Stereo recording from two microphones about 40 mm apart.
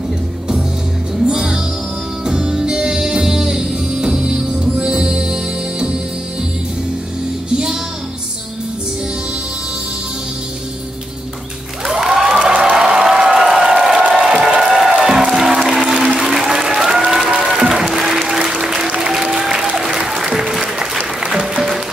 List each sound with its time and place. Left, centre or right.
1.3 s music: centre
7.4 s music: right
11.8 s a sound: centre
14.1 s crowd: centre
14.5 s music: centre
19.8 s applause: centre